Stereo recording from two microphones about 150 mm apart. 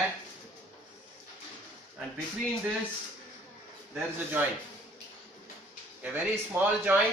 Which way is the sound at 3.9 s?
10° right (ahead or behind).